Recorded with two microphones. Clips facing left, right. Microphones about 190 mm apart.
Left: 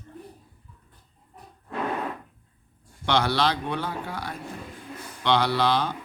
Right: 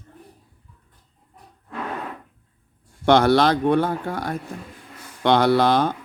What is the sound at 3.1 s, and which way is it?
Speech, 50° right (ahead or behind).